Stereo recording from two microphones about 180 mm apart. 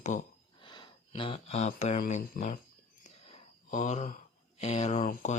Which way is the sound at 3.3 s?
40° left (ahead or behind).